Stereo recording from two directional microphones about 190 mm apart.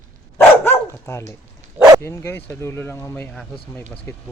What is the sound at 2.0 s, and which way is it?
Speech, 10° left (ahead or behind).